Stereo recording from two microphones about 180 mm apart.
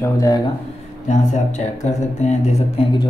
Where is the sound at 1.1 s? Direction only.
40° left (ahead or behind).